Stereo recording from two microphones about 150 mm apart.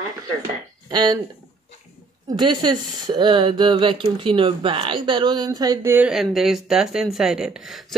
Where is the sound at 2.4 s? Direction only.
30° right (ahead or behind).